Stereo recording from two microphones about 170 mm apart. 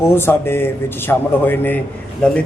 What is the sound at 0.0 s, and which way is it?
Speech, 15° left (ahead or behind).